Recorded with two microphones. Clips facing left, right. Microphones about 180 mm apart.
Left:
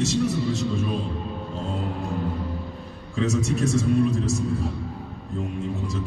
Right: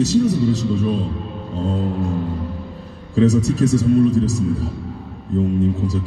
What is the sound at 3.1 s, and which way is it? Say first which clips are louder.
A man's voice: right 8 dB; 40° right (ahead or behind).